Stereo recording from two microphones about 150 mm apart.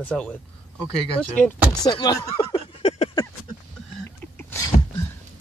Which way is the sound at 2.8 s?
45° left (ahead or behind).